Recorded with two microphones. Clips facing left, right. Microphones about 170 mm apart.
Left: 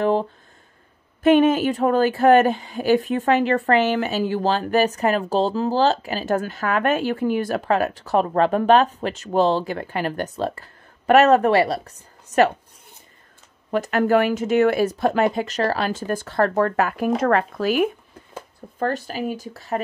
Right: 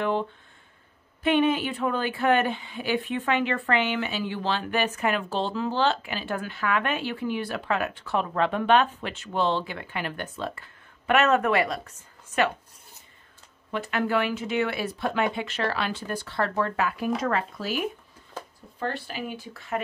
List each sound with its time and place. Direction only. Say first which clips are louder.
0.0 s speech: left 6 dB; 35° left (ahead or behind)
13.7 s speech: left 8 dB; 45° left (ahead or behind)
18.8 s speech: left 7 dB; 45° left (ahead or behind)